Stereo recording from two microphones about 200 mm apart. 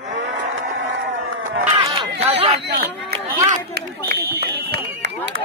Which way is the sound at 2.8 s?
50° right (ahead or behind).